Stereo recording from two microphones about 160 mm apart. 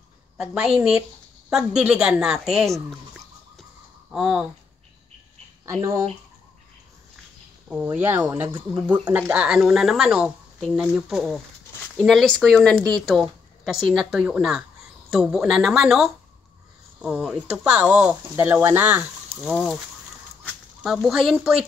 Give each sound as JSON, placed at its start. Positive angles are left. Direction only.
{"t": 0.4, "sound": "speech", "side_deg": -5}
{"t": 4.1, "sound": "speech", "side_deg": -5}
{"t": 5.7, "sound": "speech", "side_deg": -15}
{"t": 7.7, "sound": "speech", "side_deg": -10}
{"t": 20.8, "sound": "speech", "side_deg": 0}